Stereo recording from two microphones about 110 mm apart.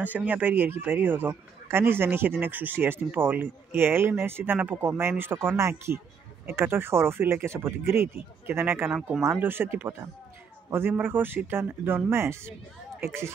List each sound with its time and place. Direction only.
0.0 s a man's voice: 15° right (ahead or behind)